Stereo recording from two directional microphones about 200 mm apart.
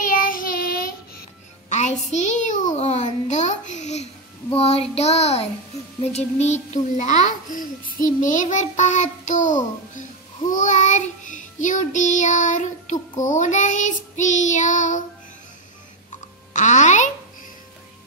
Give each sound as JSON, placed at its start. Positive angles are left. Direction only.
{"t": 0.1, "sound": "child singing", "side_deg": 45}
{"t": 1.7, "sound": "a sound", "side_deg": 35}
{"t": 4.6, "sound": "a child's voice", "side_deg": 30}
{"t": 10.5, "sound": "child singing", "side_deg": 40}
{"t": 11.6, "sound": "a child's voice", "side_deg": 40}
{"t": 16.5, "sound": "a child's voice", "side_deg": 35}